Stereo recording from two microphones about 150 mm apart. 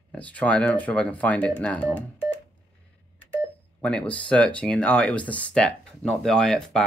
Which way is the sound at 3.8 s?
10° left (ahead or behind).